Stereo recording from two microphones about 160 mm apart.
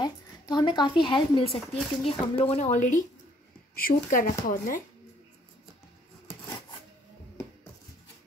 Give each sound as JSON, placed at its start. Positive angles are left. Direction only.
{"t": 0.0, "sound": "a woman's voice", "side_deg": 25}
{"t": 3.7, "sound": "speech", "side_deg": 65}